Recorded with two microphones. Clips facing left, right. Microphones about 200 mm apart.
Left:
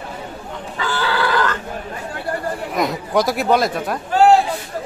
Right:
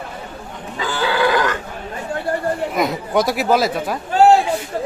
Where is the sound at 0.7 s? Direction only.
15° right (ahead or behind).